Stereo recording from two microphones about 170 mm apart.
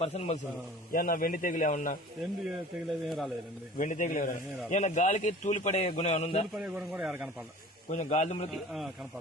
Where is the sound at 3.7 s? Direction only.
50° left (ahead or behind).